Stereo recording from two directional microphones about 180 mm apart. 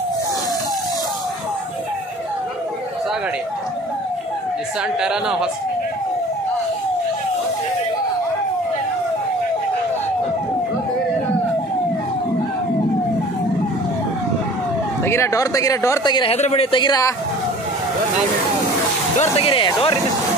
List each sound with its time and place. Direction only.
5.0 s speech: 5° right (ahead or behind)
15.0 s speech: 15° left (ahead or behind)
19.1 s speech: 35° left (ahead or behind)